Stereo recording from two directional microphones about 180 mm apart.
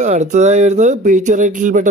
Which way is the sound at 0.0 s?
40° right (ahead or behind).